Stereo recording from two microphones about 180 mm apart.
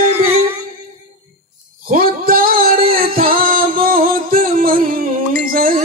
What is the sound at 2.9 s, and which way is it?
Music, 55° right (ahead or behind).